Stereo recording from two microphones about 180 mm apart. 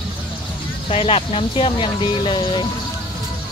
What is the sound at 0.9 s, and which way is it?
Speech, 30° left (ahead or behind).